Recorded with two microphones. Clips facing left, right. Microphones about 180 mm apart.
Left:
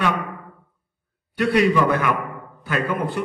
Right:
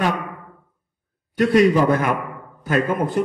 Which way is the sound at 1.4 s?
45° right (ahead or behind).